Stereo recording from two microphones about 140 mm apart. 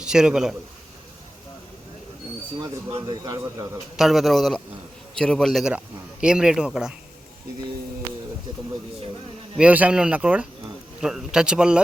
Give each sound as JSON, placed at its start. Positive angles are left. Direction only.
{"t": 0.0, "sound": "a man's voice", "side_deg": -5}
{"t": 3.2, "sound": "a man's voice", "side_deg": -25}
{"t": 3.9, "sound": "speech", "side_deg": 0}
{"t": 9.6, "sound": "speech", "side_deg": -10}